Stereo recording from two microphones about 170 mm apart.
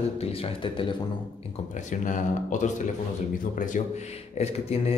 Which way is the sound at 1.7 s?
50° left (ahead or behind).